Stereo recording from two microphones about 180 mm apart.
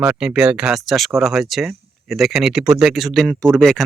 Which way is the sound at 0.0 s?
5° right (ahead or behind).